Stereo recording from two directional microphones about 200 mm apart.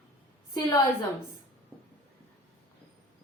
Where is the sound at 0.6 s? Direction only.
15° left (ahead or behind).